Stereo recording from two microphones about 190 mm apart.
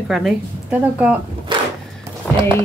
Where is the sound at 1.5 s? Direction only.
25° right (ahead or behind).